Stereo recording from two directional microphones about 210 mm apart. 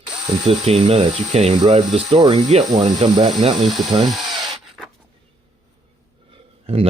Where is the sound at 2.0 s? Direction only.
20° right (ahead or behind).